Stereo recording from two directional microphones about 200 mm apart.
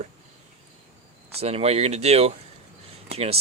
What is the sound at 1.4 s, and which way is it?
Speech, 30° right (ahead or behind).